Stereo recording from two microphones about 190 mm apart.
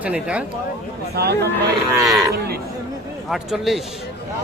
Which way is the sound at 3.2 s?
Centre (ahead or behind).